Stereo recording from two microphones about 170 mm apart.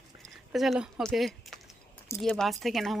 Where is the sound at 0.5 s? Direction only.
Centre (ahead or behind).